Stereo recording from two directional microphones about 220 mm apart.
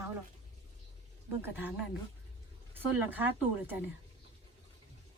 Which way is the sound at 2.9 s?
10° right (ahead or behind).